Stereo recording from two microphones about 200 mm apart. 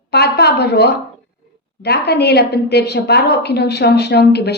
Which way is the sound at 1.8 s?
55° left (ahead or behind).